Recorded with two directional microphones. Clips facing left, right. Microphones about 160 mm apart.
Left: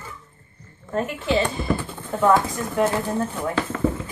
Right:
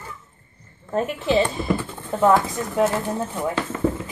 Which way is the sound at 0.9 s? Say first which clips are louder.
Right 2 dB; 25° right (ahead or behind).